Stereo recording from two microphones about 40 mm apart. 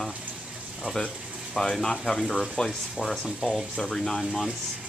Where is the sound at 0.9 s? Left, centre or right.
Centre.